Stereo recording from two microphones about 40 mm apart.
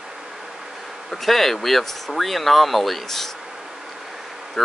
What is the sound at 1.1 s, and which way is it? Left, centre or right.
Speech, centre.